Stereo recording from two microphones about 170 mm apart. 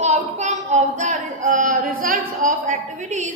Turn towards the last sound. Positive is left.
turn(degrees=-45)  # may be behind; listen again after turning